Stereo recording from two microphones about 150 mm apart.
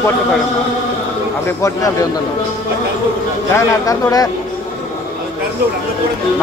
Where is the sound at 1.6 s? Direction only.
20° left (ahead or behind).